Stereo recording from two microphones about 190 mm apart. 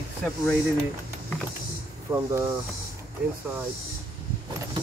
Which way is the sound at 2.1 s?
20° right (ahead or behind).